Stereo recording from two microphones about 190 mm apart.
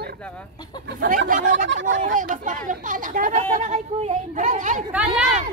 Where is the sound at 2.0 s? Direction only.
45° right (ahead or behind).